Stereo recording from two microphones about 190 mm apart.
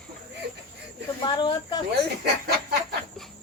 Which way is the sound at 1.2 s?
25° left (ahead or behind).